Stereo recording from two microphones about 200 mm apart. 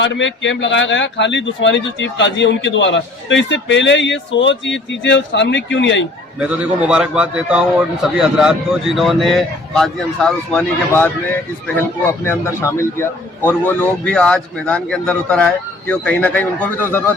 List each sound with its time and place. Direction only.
0.0 s speech: 65° left (ahead or behind)
6.4 s a man's voice: 5° right (ahead or behind)
12.2 s a man's voice: 15° left (ahead or behind)